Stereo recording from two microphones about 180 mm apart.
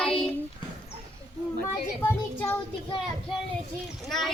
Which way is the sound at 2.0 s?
10° left (ahead or behind).